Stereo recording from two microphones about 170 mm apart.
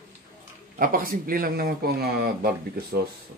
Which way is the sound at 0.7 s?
55° right (ahead or behind).